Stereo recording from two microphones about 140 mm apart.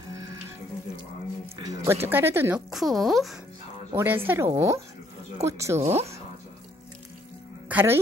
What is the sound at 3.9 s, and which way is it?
Speech, 15° right (ahead or behind).